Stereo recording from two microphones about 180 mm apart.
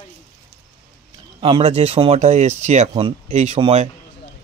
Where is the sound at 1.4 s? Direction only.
30° right (ahead or behind).